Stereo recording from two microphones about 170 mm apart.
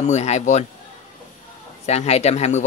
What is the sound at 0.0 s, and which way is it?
Speech, 40° left (ahead or behind).